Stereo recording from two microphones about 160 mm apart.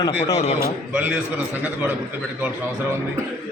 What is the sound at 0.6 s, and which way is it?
Speech, 15° right (ahead or behind).